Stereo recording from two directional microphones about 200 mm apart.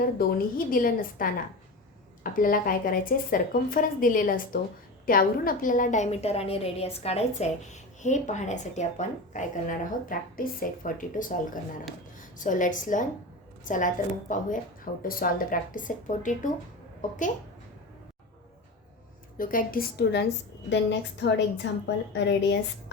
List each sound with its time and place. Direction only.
0.0 s a woman's voice: 50° left (ahead or behind)
19.4 s a woman's voice: 45° left (ahead or behind)
22.1 s a woman's voice: 60° left (ahead or behind)